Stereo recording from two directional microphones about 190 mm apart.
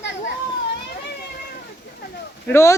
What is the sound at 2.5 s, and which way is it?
Speech, 15° left (ahead or behind).